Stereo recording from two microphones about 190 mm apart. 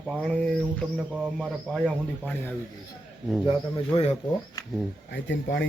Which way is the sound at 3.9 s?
35° left (ahead or behind).